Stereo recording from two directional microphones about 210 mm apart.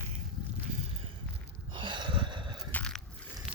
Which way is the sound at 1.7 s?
20° right (ahead or behind).